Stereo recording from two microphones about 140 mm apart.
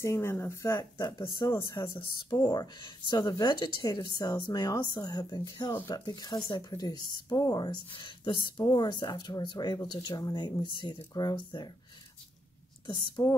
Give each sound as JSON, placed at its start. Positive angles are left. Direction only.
{"t": 0.0, "sound": "a woman's voice", "side_deg": 20}
{"t": 12.8, "sound": "speech", "side_deg": 25}